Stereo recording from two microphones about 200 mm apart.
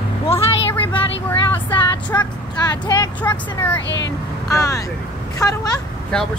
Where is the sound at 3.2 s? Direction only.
10° left (ahead or behind).